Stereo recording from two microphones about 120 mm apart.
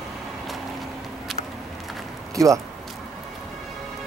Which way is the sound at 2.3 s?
25° right (ahead or behind).